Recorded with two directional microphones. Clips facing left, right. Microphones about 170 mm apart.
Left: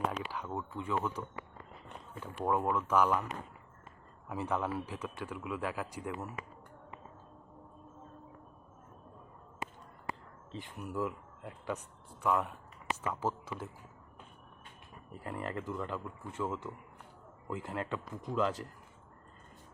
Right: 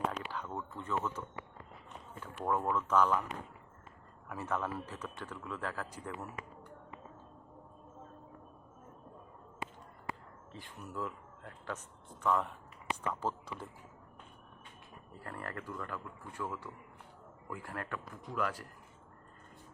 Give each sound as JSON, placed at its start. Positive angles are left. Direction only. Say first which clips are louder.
{"t": 0.1, "sound": "speech", "louder": "left 2 dB", "side_deg": 10}
{"t": 2.2, "sound": "speech", "louder": "left 2 dB", "side_deg": 10}
{"t": 4.3, "sound": "speech", "louder": "left 3 dB", "side_deg": 15}
{"t": 10.5, "sound": "speech", "louder": "left 5 dB", "side_deg": 15}
{"t": 15.1, "sound": "speech", "louder": "left 5 dB", "side_deg": 15}